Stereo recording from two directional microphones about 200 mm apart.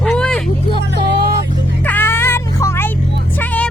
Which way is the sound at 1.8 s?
10° left (ahead or behind).